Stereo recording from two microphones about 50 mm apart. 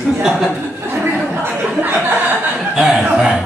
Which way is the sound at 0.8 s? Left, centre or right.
Right.